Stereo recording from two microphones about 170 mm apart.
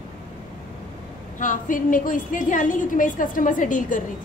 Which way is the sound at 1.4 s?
50° left (ahead or behind).